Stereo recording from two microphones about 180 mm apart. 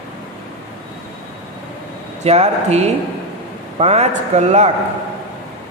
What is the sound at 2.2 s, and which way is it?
A man's voice, 35° right (ahead or behind).